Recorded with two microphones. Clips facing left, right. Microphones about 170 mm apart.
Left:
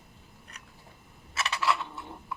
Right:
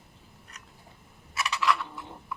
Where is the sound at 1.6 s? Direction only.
25° left (ahead or behind).